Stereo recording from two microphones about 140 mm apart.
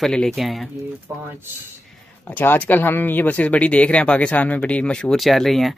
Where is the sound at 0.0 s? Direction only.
5° left (ahead or behind).